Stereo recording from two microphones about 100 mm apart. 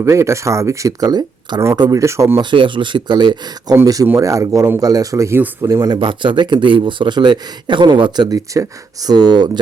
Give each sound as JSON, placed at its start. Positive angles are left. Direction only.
{"t": 0.0, "sound": "speech", "side_deg": -30}
{"t": 2.4, "sound": "speech", "side_deg": -55}
{"t": 4.0, "sound": "speech", "side_deg": -30}
{"t": 6.0, "sound": "speech", "side_deg": -55}